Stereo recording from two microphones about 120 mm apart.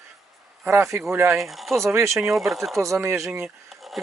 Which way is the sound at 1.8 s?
25° right (ahead or behind).